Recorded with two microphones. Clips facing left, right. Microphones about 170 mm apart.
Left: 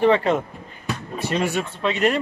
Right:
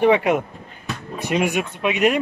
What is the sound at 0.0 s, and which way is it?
Speech, 10° right (ahead or behind).